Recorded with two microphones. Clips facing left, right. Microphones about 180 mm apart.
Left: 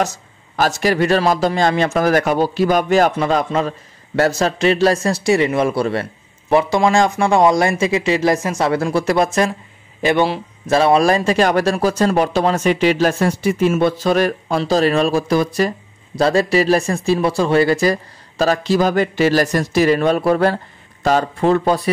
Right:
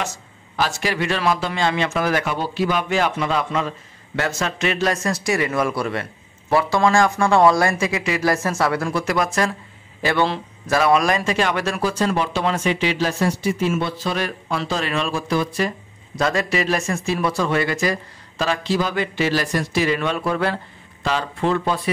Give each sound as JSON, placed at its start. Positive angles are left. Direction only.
{"t": 0.6, "sound": "a man's voice", "side_deg": 40}
{"t": 6.5, "sound": "speech", "side_deg": 20}
{"t": 10.0, "sound": "speech", "side_deg": 15}
{"t": 10.7, "sound": "a man's voice", "side_deg": 30}